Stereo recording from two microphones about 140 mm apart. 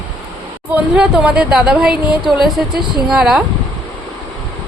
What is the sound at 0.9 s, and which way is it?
Speech, 5° right (ahead or behind).